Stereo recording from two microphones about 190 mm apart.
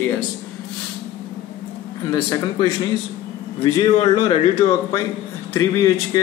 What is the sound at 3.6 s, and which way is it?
Speech, 25° left (ahead or behind).